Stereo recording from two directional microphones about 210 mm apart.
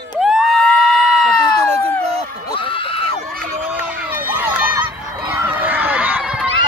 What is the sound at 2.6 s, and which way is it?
Neigh, 25° left (ahead or behind).